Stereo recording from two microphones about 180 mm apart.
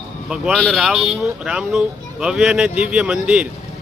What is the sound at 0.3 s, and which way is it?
Speech, centre (ahead or behind).